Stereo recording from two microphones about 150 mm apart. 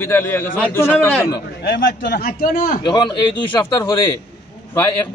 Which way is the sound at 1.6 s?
90° left.